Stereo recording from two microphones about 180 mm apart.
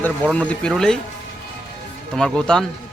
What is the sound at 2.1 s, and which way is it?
Speech, 5° left (ahead or behind).